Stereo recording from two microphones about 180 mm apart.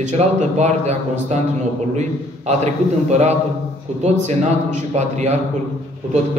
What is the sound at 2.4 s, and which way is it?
Speech, 40° right (ahead or behind).